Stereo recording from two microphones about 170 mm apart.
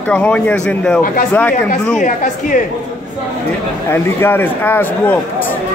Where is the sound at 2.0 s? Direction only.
50° left (ahead or behind).